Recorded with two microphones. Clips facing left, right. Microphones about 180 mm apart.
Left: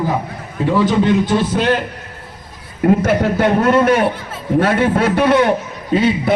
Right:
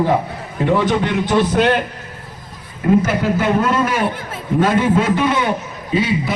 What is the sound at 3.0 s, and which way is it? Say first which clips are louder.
A man's voice: left 3 dB; 65° left (ahead or behind).